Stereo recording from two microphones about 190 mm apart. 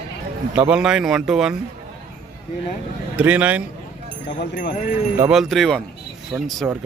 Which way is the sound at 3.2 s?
5° right (ahead or behind).